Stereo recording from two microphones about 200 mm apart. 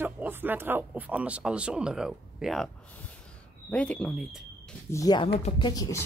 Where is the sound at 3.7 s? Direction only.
5° left (ahead or behind).